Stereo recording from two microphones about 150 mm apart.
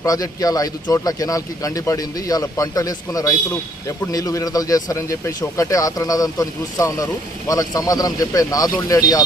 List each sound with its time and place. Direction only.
0.0 s a man's voice: 25° left (ahead or behind)